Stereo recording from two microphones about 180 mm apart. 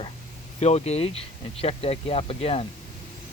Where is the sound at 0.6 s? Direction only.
35° left (ahead or behind).